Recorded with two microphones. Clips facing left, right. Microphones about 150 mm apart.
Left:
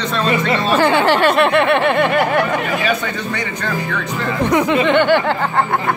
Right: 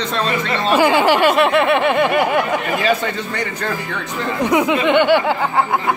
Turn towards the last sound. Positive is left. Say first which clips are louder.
# even
turn(degrees=-10)  # may be behind; listen again after turning